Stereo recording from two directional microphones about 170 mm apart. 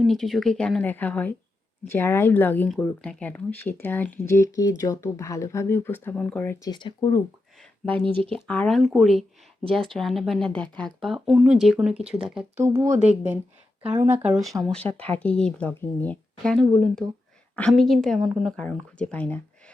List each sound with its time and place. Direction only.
0.0 s speech: centre (ahead or behind)
6.7 s speech: 25° left (ahead or behind)
7.6 s a sound: 10° left (ahead or behind)
8.4 s speech: 5° left (ahead or behind)
12.6 s speech: 15° right (ahead or behind)
14.7 s speech: 5° left (ahead or behind)